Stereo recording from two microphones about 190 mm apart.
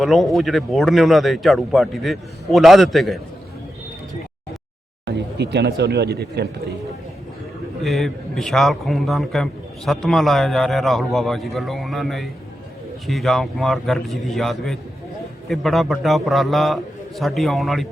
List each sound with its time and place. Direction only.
0.0 s a man's voice: centre (ahead or behind)
5.0 s speech: 65° right (ahead or behind)
7.8 s a man's voice: centre (ahead or behind)